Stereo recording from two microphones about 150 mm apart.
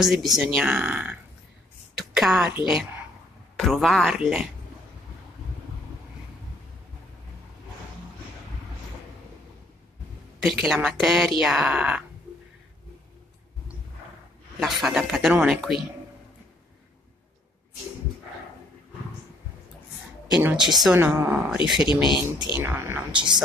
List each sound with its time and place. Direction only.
0.0 s speech: centre (ahead or behind)
2.0 s a sound: centre (ahead or behind)
2.5 s speech: 5° right (ahead or behind)
10.6 s speech: 5° right (ahead or behind)
14.6 s speech: centre (ahead or behind)
20.4 s speech: 5° right (ahead or behind)
21.0 s speech: 10° right (ahead or behind)
21.8 s speech: 30° left (ahead or behind)
22.6 s speech: 10° right (ahead or behind)
23.1 s speech: 30° right (ahead or behind)